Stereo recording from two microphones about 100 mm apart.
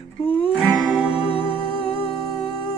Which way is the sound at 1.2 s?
65° left (ahead or behind).